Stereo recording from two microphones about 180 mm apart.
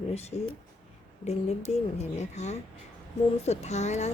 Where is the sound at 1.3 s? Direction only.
35° left (ahead or behind).